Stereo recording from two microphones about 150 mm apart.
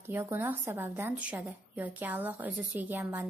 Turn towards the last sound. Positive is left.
turn(degrees=-15)  # may be behind; listen again after turning